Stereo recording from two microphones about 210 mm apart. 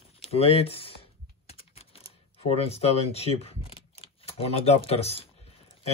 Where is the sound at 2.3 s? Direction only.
30° left (ahead or behind).